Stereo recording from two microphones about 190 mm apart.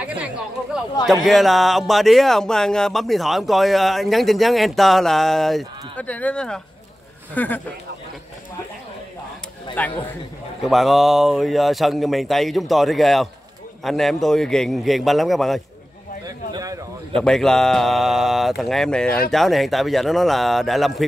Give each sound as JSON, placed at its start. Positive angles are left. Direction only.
{"t": 0.0, "sound": "chatter", "side_deg": -5}
{"t": 1.2, "sound": "speech", "side_deg": 0}
{"t": 9.8, "sound": "speech", "side_deg": 10}
{"t": 16.5, "sound": "speech", "side_deg": -20}
{"t": 17.1, "sound": "speech", "side_deg": 5}